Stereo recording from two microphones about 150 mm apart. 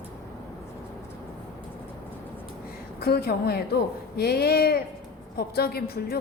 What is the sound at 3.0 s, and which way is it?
A woman's voice, 90° left.